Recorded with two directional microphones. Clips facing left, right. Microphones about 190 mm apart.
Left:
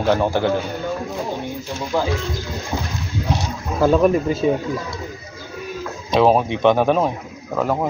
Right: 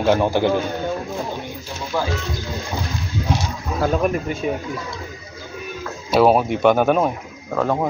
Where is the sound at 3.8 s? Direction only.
30° left (ahead or behind).